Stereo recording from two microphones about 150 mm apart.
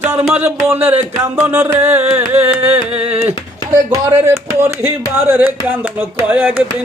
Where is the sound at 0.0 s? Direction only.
15° right (ahead or behind).